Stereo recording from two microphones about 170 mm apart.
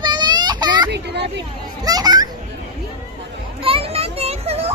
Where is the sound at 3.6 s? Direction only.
35° right (ahead or behind).